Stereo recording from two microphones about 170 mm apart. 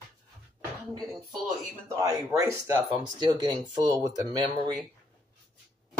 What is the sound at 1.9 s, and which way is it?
Speech, 20° right (ahead or behind).